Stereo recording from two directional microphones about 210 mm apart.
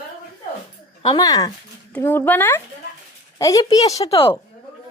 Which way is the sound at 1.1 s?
20° left (ahead or behind).